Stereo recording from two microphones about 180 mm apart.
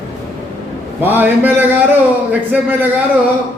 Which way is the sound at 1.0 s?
10° right (ahead or behind).